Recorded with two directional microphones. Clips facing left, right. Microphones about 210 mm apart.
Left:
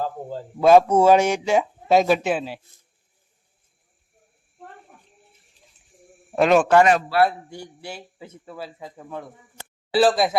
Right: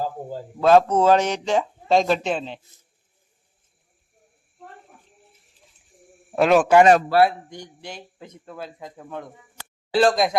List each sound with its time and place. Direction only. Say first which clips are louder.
0.0 s a man's voice: even; 10° right (ahead or behind)
0.6 s speech: left 2 dB; 10° left (ahead or behind)
6.3 s a man's voice: even; 5° right (ahead or behind)
6.8 s a man's voice: right 4 dB; 40° right (ahead or behind)
7.3 s a man's voice: even; 10° left (ahead or behind)